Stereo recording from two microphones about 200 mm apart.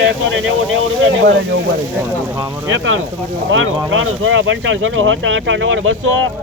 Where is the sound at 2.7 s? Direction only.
75° right (ahead or behind).